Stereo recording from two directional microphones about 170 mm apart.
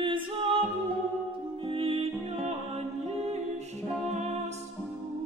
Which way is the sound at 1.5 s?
35° right (ahead or behind).